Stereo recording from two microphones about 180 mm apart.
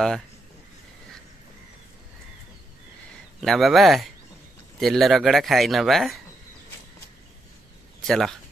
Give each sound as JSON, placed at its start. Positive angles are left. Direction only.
{"t": 3.3, "sound": "speech", "side_deg": 0}
{"t": 8.1, "sound": "speech", "side_deg": 0}